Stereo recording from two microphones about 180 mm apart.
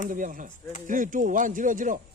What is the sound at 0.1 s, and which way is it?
Speech, 50° right (ahead or behind).